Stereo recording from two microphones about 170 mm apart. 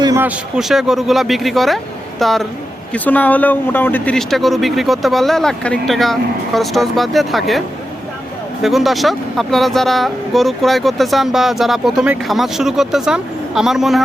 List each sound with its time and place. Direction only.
0.0 s a sound: 20° right (ahead or behind)
0.3 s speech: 5° right (ahead or behind)
8.6 s speech: centre (ahead or behind)